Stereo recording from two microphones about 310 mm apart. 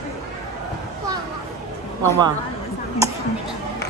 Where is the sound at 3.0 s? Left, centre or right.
Centre.